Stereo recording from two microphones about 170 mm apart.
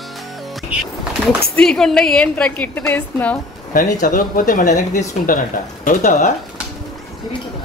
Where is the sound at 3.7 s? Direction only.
50° left (ahead or behind).